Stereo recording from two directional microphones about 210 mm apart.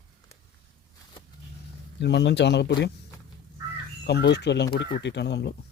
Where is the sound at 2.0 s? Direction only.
55° left (ahead or behind).